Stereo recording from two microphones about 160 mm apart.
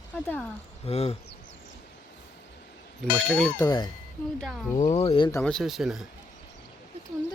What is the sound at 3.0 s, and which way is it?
Speech, centre (ahead or behind).